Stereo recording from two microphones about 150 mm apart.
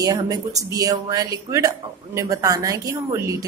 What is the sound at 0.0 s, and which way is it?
A woman's voice, 25° right (ahead or behind).